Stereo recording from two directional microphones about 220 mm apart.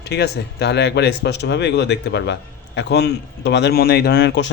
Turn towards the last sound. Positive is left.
turn(degrees=50)  # may be behind; listen again after turning